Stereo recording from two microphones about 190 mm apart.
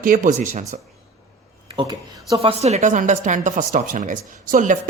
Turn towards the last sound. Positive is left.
turn(degrees=-45)  # may be behind; listen again after turning